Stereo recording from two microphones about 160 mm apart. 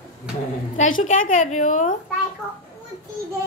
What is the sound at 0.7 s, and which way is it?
A woman's voice, 50° left (ahead or behind).